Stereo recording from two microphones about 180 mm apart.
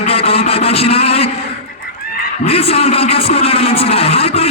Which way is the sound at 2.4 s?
35° left (ahead or behind).